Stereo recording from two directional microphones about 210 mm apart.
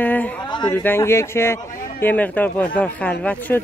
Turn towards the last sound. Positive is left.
turn(degrees=10)  # may be behind; listen again after turning